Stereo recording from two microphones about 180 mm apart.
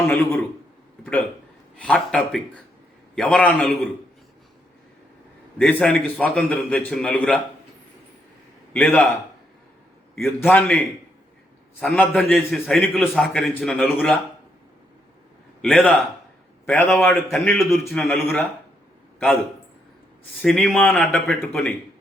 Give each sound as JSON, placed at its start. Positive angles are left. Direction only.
{"t": 0.0, "sound": "a man's voice", "side_deg": 15}
{"t": 1.8, "sound": "a man's voice", "side_deg": 5}
{"t": 5.5, "sound": "a man's voice", "side_deg": 5}
{"t": 8.7, "sound": "a man's voice", "side_deg": 10}
{"t": 10.2, "sound": "a man's voice", "side_deg": 10}
{"t": 15.6, "sound": "a man's voice", "side_deg": 5}
{"t": 17.2, "sound": "a man's voice", "side_deg": 0}
{"t": 20.4, "sound": "a man's voice", "side_deg": 5}